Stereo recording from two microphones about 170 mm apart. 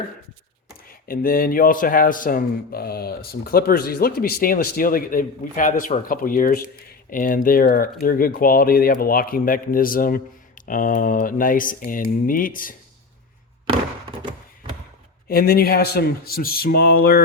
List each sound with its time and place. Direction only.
1.0 s a man's voice: 60° left (ahead or behind)
15.3 s a man's voice: 60° left (ahead or behind)